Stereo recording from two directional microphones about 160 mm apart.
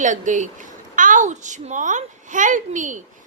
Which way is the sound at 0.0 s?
50° right (ahead or behind).